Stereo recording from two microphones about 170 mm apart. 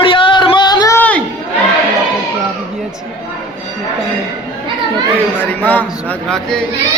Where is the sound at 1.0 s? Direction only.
5° left (ahead or behind).